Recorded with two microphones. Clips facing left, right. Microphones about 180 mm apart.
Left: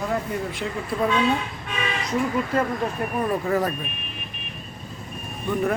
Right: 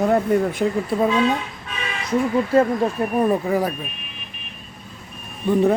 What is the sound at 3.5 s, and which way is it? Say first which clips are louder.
Speech: right 2 dB; 10° right (ahead or behind).